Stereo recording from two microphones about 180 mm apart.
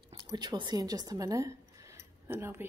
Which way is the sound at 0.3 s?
25° right (ahead or behind).